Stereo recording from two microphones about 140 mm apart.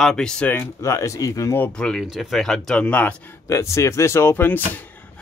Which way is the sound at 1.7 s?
5° left (ahead or behind).